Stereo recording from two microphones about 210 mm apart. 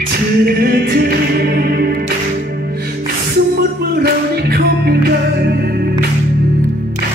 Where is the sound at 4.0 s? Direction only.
50° right (ahead or behind).